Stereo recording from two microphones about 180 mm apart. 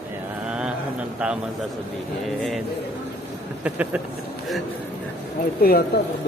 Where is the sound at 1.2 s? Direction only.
5° right (ahead or behind).